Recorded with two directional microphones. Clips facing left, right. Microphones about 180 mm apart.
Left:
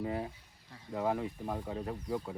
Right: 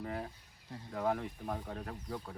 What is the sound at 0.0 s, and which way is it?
Speech, 5° left (ahead or behind).